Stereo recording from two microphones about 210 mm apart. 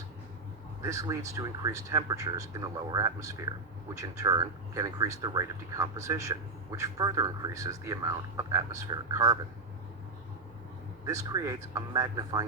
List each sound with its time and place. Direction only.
0.8 s speech: 15° right (ahead or behind)
11.0 s speech: 15° right (ahead or behind)